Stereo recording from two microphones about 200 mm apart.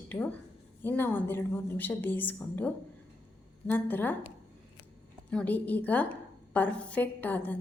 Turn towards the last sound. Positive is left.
turn(degrees=10)  # may be behind; listen again after turning